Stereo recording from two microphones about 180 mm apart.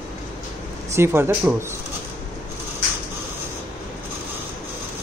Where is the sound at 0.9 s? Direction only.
15° right (ahead or behind).